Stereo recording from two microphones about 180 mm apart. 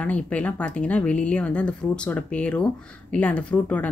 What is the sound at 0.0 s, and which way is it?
Speech, 10° left (ahead or behind).